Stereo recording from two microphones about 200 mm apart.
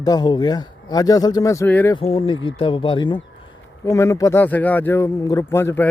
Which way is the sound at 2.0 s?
25° left (ahead or behind).